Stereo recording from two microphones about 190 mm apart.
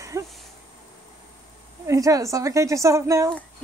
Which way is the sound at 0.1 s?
15° right (ahead or behind).